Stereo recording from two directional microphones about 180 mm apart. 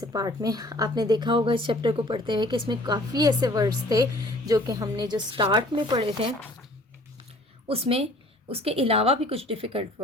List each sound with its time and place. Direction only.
0.0 s a woman's voice: 20° right (ahead or behind)
7.7 s a woman's voice: 30° right (ahead or behind)